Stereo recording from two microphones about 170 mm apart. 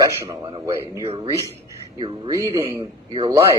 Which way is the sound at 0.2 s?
25° right (ahead or behind).